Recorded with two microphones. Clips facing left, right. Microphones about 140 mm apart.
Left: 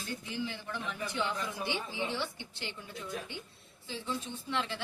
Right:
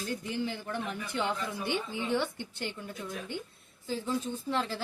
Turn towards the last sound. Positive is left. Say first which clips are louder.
# right 4 dB
turn(degrees=-40)  # may be behind; listen again after turning